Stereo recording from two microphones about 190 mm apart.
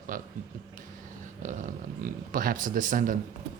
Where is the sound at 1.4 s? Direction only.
40° right (ahead or behind).